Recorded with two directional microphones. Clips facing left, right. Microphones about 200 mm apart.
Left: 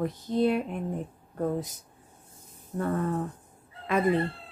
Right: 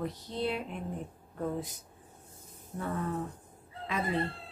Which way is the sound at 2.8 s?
50° left (ahead or behind).